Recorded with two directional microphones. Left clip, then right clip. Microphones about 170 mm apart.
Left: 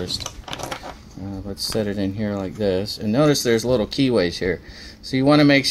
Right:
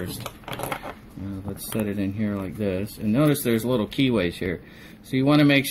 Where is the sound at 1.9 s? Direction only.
35° left (ahead or behind).